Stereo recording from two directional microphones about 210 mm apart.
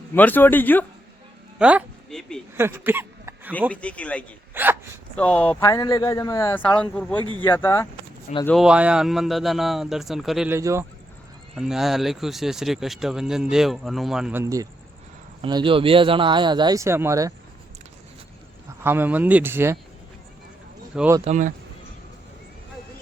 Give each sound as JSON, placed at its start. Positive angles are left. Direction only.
{"t": 0.1, "sound": "speech", "side_deg": 10}
{"t": 1.5, "sound": "speech", "side_deg": -5}
{"t": 2.6, "sound": "a sound", "side_deg": -10}
{"t": 3.7, "sound": "speech", "side_deg": 5}
{"t": 4.5, "sound": "a sound", "side_deg": -10}
{"t": 5.1, "sound": "speech", "side_deg": 5}
{"t": 8.4, "sound": "speech", "side_deg": 0}
{"t": 10.6, "sound": "speech", "side_deg": -15}
{"t": 11.5, "sound": "speech", "side_deg": 0}
{"t": 18.8, "sound": "speech", "side_deg": -10}
{"t": 20.9, "sound": "speech", "side_deg": -5}
{"t": 21.2, "sound": "speech", "side_deg": -35}